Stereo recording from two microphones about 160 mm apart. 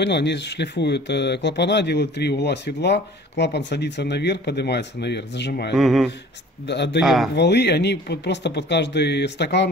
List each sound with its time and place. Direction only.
0.0 s speech: 90° left
5.8 s speech: centre (ahead or behind)
6.6 s speech: 90° left
7.0 s speech: centre (ahead or behind)
7.3 s speech: 90° left